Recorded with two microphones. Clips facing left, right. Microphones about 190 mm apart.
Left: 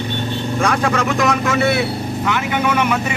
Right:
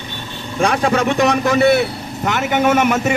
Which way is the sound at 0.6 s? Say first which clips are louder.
Right 3 dB; 30° right (ahead or behind).